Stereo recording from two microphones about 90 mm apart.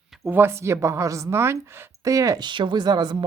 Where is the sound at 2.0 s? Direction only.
40° right (ahead or behind).